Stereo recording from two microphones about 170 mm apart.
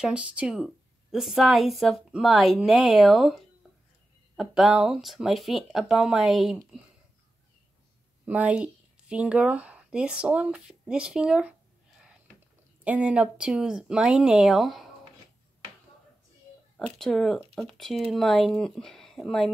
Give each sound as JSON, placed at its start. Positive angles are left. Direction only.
{"t": 0.0, "sound": "a woman's voice", "side_deg": -5}
{"t": 8.3, "sound": "speech", "side_deg": -10}
{"t": 12.8, "sound": "a woman's voice", "side_deg": -5}
{"t": 16.7, "sound": "a woman's voice", "side_deg": 5}